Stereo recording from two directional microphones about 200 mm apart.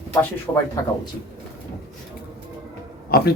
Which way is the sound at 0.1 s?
15° left (ahead or behind).